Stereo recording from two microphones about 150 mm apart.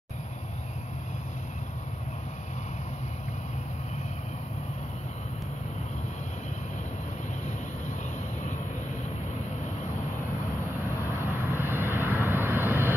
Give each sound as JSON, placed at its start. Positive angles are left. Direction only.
{"t": 11.3, "sound": "vehicle", "side_deg": -15}